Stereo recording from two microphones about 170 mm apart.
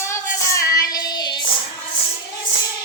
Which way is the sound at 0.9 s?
25° left (ahead or behind).